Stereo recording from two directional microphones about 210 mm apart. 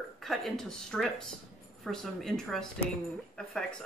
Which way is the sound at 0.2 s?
Centre (ahead or behind).